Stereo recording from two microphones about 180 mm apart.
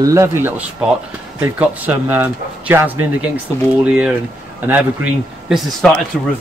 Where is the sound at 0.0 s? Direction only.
15° right (ahead or behind).